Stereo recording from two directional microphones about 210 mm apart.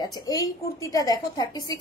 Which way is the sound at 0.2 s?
15° left (ahead or behind).